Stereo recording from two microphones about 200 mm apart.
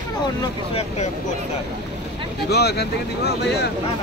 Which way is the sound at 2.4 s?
55° left (ahead or behind).